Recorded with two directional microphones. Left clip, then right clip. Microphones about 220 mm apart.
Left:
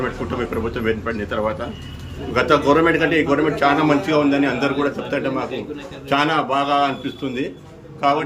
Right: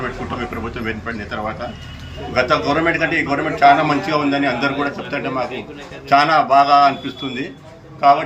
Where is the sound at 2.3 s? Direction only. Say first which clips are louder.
Left 1 dB; 20° left (ahead or behind).